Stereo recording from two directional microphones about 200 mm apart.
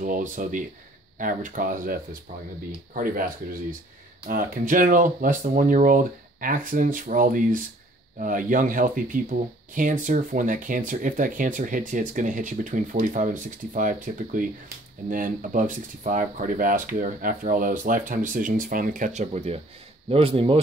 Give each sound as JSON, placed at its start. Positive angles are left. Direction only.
{"t": 0.0, "sound": "speech", "side_deg": -40}
{"t": 4.3, "sound": "speech", "side_deg": -45}